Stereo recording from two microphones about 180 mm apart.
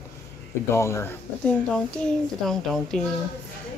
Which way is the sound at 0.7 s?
15° left (ahead or behind).